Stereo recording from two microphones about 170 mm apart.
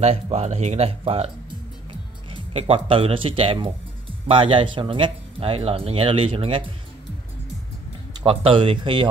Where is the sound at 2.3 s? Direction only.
35° right (ahead or behind).